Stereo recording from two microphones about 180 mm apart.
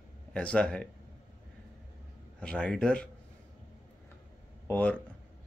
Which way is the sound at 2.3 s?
5° left (ahead or behind).